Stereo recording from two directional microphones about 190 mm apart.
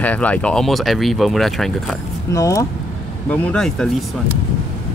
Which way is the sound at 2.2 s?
15° left (ahead or behind).